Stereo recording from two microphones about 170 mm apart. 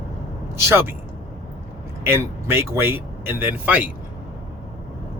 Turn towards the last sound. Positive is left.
turn(degrees=-10)  # may be behind; listen again after turning